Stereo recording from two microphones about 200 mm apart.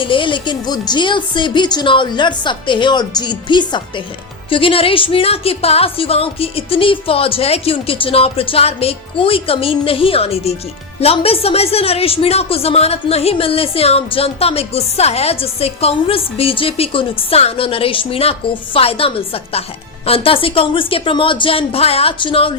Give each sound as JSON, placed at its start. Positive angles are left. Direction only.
{"t": 0.0, "sound": "a woman's voice", "side_deg": 25}